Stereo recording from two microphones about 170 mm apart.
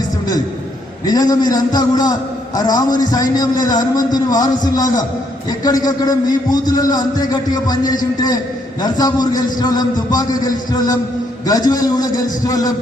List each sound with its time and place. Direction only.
1.0 s a man's voice: 25° left (ahead or behind)